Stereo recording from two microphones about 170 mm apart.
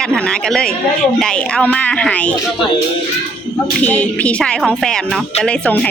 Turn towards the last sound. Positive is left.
turn(degrees=5)  # may be behind; listen again after turning